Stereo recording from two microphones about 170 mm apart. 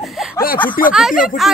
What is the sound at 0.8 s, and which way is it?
Speech, 55° left (ahead or behind).